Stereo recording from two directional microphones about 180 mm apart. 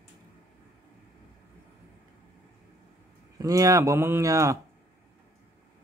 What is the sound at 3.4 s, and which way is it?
Speech, 20° right (ahead or behind).